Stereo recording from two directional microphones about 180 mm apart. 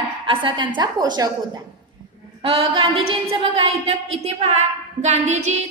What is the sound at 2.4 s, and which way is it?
A woman's voice, 30° right (ahead or behind).